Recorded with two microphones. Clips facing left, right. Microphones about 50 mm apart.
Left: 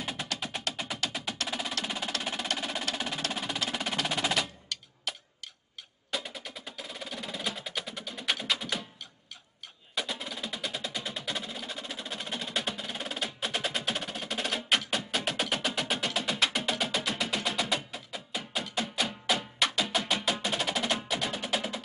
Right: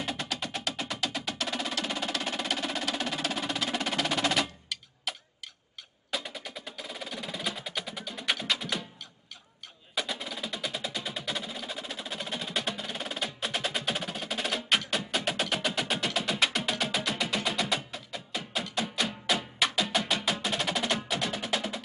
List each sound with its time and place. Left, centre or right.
0.0 s music: centre
9.9 s music: centre